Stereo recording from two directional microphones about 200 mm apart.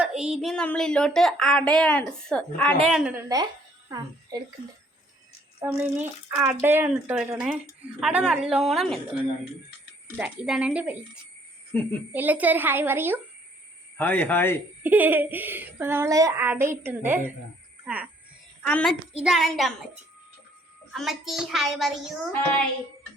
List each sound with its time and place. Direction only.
0.0 s a child's voice: 5° right (ahead or behind)
5.5 s a child's voice: 10° right (ahead or behind)
10.2 s a child's voice: 5° right (ahead or behind)
11.7 s speech: 5° left (ahead or behind)
12.1 s a child's voice: 10° right (ahead or behind)
13.9 s speech: 10° left (ahead or behind)
14.8 s a child's voice: 10° right (ahead or behind)
18.6 s a child's voice: 5° left (ahead or behind)
20.9 s a child's voice: centre (ahead or behind)